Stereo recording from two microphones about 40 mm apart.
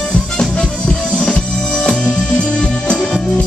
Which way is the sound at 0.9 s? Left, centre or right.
Left.